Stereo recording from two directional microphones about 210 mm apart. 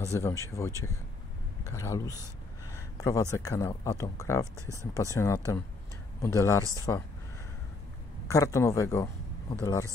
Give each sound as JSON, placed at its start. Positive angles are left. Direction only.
{"t": 0.0, "sound": "speech", "side_deg": 15}
{"t": 2.7, "sound": "a sound", "side_deg": 15}
{"t": 3.3, "sound": "speech", "side_deg": 15}
{"t": 8.3, "sound": "a man's voice", "side_deg": 15}